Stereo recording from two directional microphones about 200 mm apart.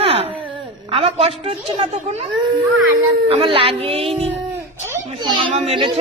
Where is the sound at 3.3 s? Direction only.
30° right (ahead or behind).